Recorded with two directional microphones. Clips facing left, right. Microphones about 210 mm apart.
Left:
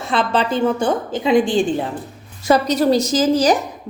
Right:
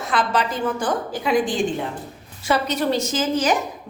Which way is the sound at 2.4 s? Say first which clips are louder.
Left 6 dB; 40° left (ahead or behind).